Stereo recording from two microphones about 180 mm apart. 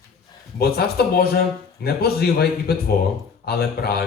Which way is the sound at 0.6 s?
60° left (ahead or behind).